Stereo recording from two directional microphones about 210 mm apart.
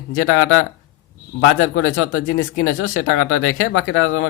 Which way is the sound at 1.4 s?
70° left (ahead or behind).